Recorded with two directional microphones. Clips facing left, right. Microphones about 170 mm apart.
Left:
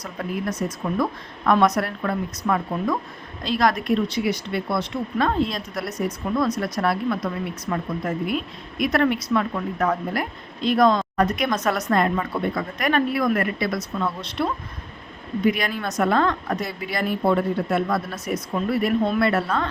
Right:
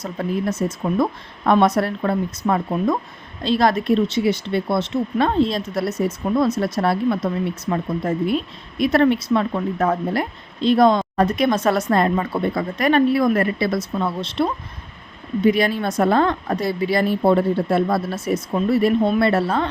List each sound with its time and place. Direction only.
0.0 s speech: 25° right (ahead or behind)